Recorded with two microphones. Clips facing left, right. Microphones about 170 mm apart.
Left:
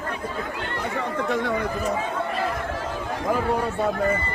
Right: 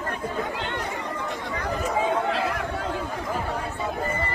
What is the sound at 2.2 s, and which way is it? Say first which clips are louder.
Chatter: right 1 dB; 90° right.